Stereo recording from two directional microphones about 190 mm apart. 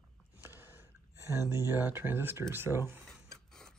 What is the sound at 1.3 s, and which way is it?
Speech, 20° left (ahead or behind).